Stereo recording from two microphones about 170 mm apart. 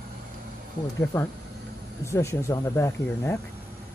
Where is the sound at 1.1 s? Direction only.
15° left (ahead or behind).